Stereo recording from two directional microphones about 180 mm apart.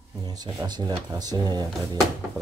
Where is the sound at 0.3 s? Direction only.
20° right (ahead or behind).